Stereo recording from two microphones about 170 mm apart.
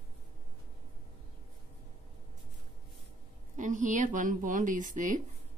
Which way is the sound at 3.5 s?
50° right (ahead or behind).